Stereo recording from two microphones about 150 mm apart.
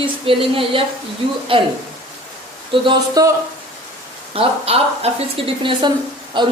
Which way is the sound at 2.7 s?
35° right (ahead or behind).